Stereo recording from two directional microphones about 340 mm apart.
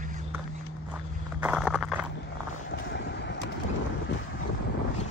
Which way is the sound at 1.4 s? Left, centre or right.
Centre.